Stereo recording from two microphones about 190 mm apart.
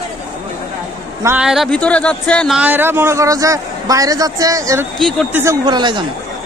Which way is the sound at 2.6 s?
10° right (ahead or behind).